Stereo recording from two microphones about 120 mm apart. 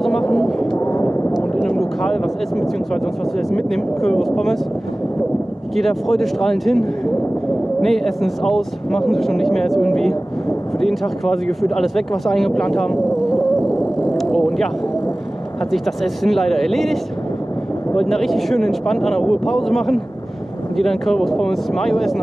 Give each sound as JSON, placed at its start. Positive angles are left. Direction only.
{"t": 0.0, "sound": "vehicle", "side_deg": 5}
{"t": 0.7, "sound": "a sound", "side_deg": 20}
{"t": 1.3, "sound": "speech", "side_deg": 0}
{"t": 5.8, "sound": "speech", "side_deg": 0}
{"t": 14.1, "sound": "vehicle", "side_deg": 0}
{"t": 15.7, "sound": "speech", "side_deg": 0}